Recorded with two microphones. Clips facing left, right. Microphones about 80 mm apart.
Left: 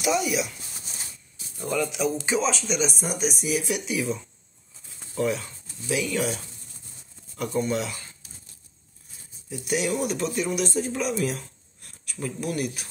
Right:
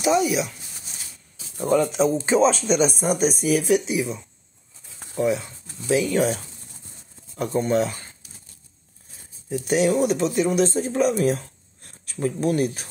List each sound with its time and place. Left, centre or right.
0.0 s speech: right
1.6 s speech: right
5.1 s speech: right
5.9 s speech: right
9.5 s speech: right